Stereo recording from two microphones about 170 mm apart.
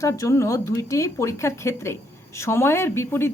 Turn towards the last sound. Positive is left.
turn(degrees=15)  # may be behind; listen again after turning